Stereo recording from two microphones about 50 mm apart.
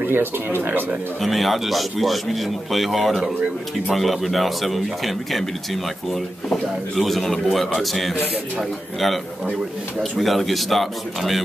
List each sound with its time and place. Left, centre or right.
0.0 s speech: right
1.2 s speech: centre